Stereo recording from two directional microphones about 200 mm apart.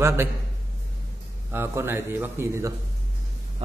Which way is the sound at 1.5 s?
10° right (ahead or behind).